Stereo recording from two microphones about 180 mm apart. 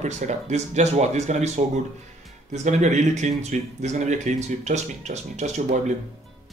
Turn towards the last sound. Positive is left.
turn(degrees=-40)  # may be behind; listen again after turning